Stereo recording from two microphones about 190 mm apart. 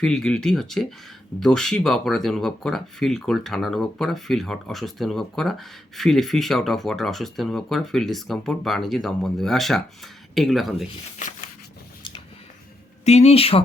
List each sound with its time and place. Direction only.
0.0 s speech: 5° left (ahead or behind)
11.2 s a sound: 40° left (ahead or behind)
13.1 s speech: 35° left (ahead or behind)